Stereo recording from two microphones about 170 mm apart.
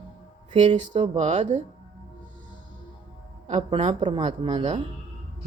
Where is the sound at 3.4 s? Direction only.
35° right (ahead or behind).